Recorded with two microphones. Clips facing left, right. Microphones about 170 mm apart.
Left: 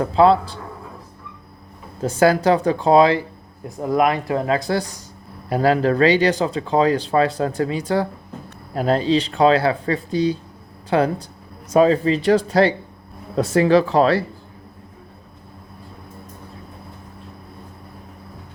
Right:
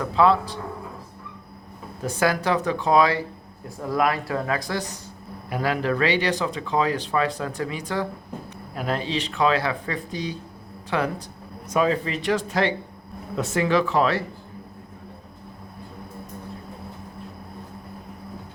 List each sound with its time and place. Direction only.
0.0 s speech: 30° left (ahead or behind)
2.0 s speech: 30° left (ahead or behind)